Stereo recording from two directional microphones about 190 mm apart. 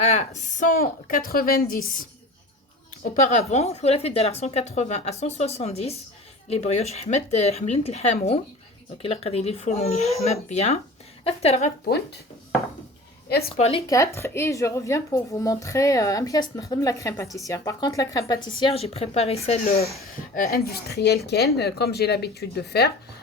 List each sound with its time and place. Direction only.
0.0 s speech: 35° left (ahead or behind)
3.0 s speech: 40° left (ahead or behind)
13.2 s a woman's voice: 55° left (ahead or behind)
13.6 s speech: 30° left (ahead or behind)
13.8 s speech: 15° left (ahead or behind); by 19.9 s 35° left (ahead or behind)
20.3 s speech: 50° left (ahead or behind)